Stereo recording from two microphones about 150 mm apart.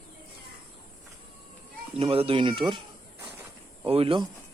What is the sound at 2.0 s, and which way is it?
Speech, 40° right (ahead or behind).